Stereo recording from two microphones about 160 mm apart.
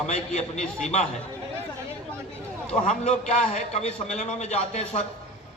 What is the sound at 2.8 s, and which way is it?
A man's voice, 50° left (ahead or behind).